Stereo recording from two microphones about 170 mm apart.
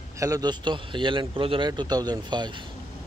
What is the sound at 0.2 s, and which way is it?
Speech, 20° right (ahead or behind).